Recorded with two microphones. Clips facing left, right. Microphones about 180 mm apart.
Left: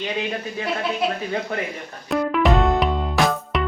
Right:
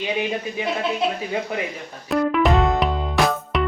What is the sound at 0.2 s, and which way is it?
Speech, 15° right (ahead or behind).